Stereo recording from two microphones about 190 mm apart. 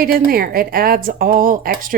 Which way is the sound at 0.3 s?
50° right (ahead or behind).